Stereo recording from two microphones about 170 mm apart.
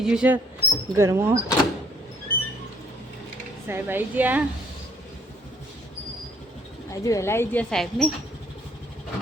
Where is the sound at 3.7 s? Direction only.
10° right (ahead or behind).